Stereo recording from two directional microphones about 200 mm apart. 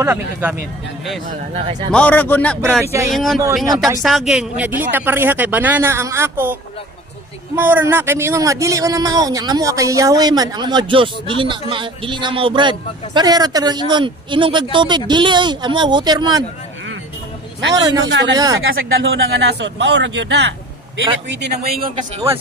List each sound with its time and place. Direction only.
0.0 s speech: 10° right (ahead or behind)
1.9 s speech: 5° left (ahead or behind)
2.8 s speech: 15° right (ahead or behind)
3.1 s a man's voice: centre (ahead or behind); by 16.4 s 20° right (ahead or behind)
17.7 s a man's voice: 20° right (ahead or behind)
18.0 s speech: 60° right (ahead or behind)
18.3 s a man's voice: 20° right (ahead or behind)
18.6 s speech: 80° right; by 21.8 s 50° right (ahead or behind)